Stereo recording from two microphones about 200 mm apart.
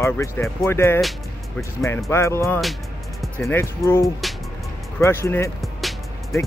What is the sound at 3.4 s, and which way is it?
Speech, 15° left (ahead or behind).